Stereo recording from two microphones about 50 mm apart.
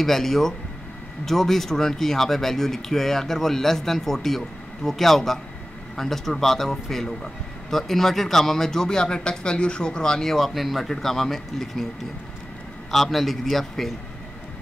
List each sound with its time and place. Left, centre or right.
0.0 s speech: centre
12.9 s speech: centre